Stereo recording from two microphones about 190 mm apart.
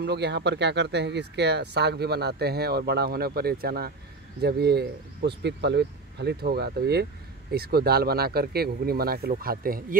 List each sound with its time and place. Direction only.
0.0 s speech: 60° right (ahead or behind)